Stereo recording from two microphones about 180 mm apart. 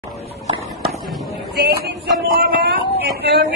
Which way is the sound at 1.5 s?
65° right (ahead or behind).